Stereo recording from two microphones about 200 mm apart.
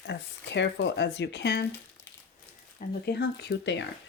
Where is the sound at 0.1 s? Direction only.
60° left (ahead or behind).